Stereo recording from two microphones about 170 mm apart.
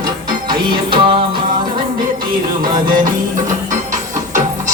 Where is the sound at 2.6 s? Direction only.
55° right (ahead or behind).